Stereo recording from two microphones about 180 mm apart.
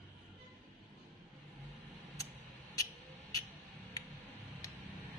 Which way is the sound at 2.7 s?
20° left (ahead or behind).